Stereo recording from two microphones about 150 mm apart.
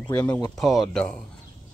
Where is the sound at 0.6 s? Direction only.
Centre (ahead or behind).